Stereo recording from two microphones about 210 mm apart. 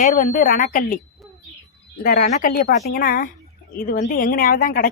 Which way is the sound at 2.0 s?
40° left (ahead or behind).